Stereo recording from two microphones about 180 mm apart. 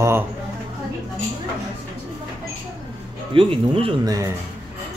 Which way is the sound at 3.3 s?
30° right (ahead or behind).